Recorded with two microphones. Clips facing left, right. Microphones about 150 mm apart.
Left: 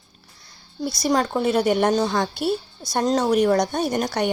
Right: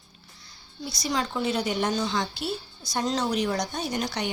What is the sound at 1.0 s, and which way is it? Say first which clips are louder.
A woman's voice: left 7 dB; 50° left (ahead or behind).